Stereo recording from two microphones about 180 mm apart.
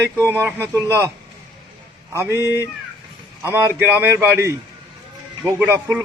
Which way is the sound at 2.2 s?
15° right (ahead or behind).